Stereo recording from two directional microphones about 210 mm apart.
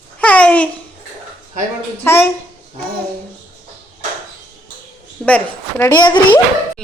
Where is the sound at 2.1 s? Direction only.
10° left (ahead or behind).